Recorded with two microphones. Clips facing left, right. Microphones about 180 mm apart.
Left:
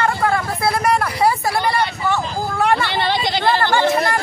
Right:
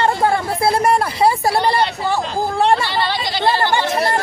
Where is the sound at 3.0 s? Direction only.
20° left (ahead or behind).